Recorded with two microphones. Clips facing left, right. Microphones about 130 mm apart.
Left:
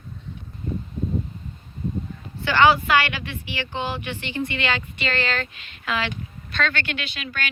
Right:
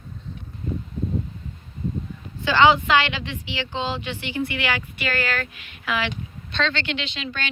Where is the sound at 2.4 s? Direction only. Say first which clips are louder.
Right 1 dB; 15° right (ahead or behind).